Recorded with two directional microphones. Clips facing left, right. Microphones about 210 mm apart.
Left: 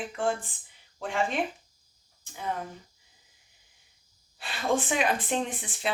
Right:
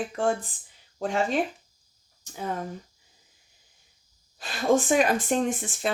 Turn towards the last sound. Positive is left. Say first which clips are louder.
# right 5 dB
turn(degrees=-45)  # may be behind; listen again after turning